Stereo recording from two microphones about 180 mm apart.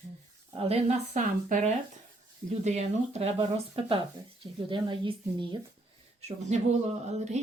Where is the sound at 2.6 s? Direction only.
40° right (ahead or behind).